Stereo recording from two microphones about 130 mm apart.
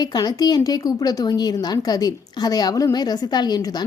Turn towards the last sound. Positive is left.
turn(degrees=30)  # may be behind; listen again after turning